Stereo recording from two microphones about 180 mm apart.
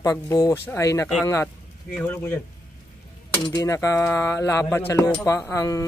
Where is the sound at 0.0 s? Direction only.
20° left (ahead or behind).